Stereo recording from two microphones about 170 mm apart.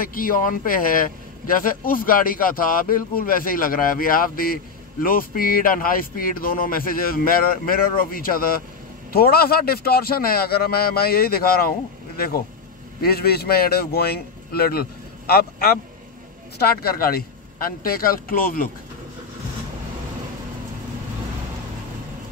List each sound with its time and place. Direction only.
0.0 s speech: 55° left (ahead or behind)
13.0 s speech: 65° left (ahead or behind)